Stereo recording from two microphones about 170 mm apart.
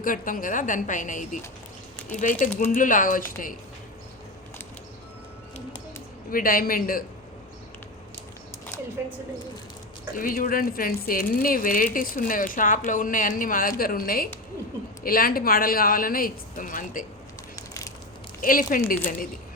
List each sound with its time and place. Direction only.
0.0 s speech: 55° left (ahead or behind)
2.4 s speech: 50° left (ahead or behind)
6.3 s speech: 55° left (ahead or behind)
10.2 s speech: 55° left (ahead or behind)
18.4 s speech: 55° left (ahead or behind)